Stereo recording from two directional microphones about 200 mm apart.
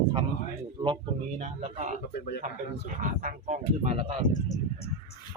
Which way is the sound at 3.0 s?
35° right (ahead or behind).